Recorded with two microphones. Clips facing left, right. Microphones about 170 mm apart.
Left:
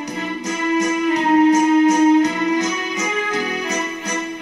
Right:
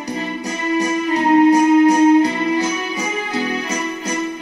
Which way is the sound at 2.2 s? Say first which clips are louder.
Even; 30° right (ahead or behind).